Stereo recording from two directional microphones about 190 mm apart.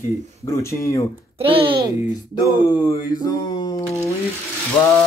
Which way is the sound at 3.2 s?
20° left (ahead or behind).